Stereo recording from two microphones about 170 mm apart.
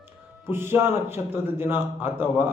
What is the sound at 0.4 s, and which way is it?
A man's voice, 15° right (ahead or behind).